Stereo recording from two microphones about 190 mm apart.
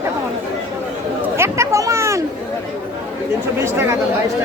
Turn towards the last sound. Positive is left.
turn(degrees=-15)  # may be behind; listen again after turning